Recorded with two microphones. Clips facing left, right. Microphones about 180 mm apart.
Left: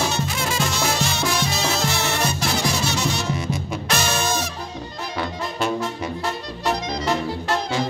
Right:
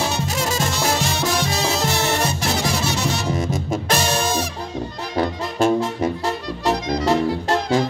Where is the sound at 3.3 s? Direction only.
45° right (ahead or behind).